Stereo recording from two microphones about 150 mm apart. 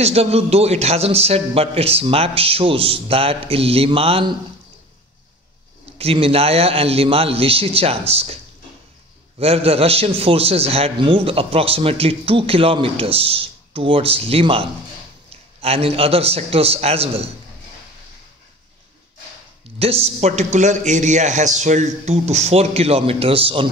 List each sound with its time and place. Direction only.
0.0 s a man's voice: 45° right (ahead or behind)
5.9 s a man's voice: 40° right (ahead or behind)
9.4 s a man's voice: 40° right (ahead or behind)
19.8 s a man's voice: 45° right (ahead or behind)